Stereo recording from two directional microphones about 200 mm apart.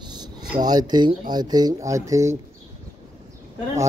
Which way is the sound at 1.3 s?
20° right (ahead or behind).